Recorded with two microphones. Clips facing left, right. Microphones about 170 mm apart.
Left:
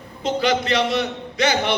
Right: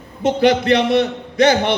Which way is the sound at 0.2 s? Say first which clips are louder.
Right 6 dB; 60° right (ahead or behind).